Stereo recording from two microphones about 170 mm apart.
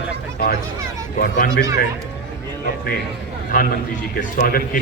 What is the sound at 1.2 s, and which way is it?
Speech, 55° left (ahead or behind).